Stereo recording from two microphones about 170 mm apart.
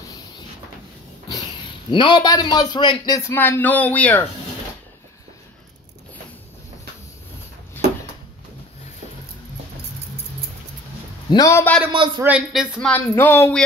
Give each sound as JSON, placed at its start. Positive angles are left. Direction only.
{"t": 1.9, "sound": "a man's voice", "side_deg": 30}
{"t": 11.2, "sound": "a man's voice", "side_deg": 20}
{"t": 12.2, "sound": "speech", "side_deg": -5}
{"t": 12.8, "sound": "speech", "side_deg": 10}